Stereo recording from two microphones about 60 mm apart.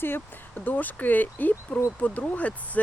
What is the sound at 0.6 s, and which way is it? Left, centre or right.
Speech, left.